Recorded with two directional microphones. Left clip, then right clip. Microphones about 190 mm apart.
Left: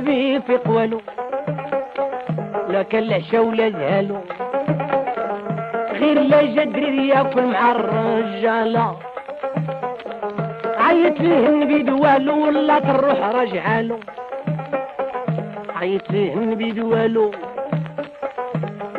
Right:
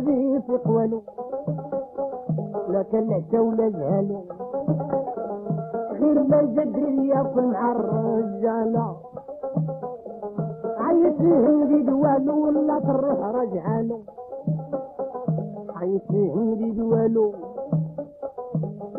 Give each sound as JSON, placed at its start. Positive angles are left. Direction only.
{"t": 0.0, "sound": "music", "side_deg": 25}
{"t": 2.5, "sound": "music", "side_deg": 35}
{"t": 3.5, "sound": "speech", "side_deg": 35}
{"t": 4.5, "sound": "music", "side_deg": 25}
{"t": 10.2, "sound": "music", "side_deg": 30}